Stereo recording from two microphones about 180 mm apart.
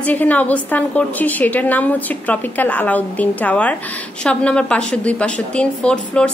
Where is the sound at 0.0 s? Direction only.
10° left (ahead or behind).